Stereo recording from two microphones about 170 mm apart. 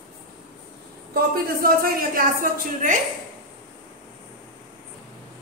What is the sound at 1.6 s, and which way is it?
A woman's voice, 60° right (ahead or behind).